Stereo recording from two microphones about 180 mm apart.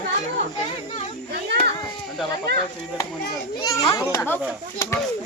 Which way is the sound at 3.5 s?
20° left (ahead or behind).